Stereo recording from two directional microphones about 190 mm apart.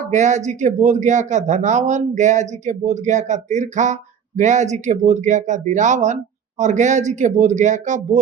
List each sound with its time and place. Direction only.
0.1 s speech: 40° right (ahead or behind)